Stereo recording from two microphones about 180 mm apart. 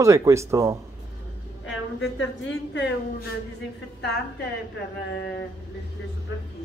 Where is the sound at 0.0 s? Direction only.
15° right (ahead or behind).